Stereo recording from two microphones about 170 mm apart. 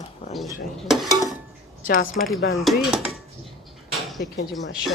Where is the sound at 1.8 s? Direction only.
55° left (ahead or behind).